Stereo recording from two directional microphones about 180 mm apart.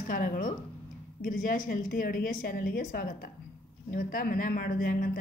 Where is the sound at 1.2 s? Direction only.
50° left (ahead or behind).